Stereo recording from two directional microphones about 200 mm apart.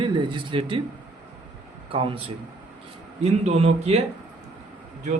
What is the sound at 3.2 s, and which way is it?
Speech, 30° right (ahead or behind).